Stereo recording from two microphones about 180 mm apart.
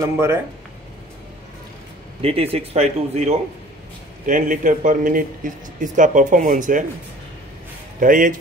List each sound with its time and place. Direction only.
0.0 s speech: 15° right (ahead or behind)
2.2 s speech: 35° right (ahead or behind)
8.0 s speech: 50° right (ahead or behind)